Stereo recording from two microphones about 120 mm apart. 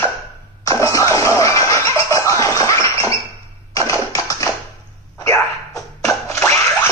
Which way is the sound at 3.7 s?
25° left (ahead or behind).